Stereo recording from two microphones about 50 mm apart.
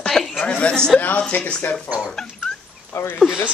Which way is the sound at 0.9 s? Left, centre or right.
Left.